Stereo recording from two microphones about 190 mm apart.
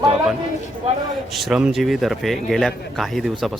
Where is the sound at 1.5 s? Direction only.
Centre (ahead or behind).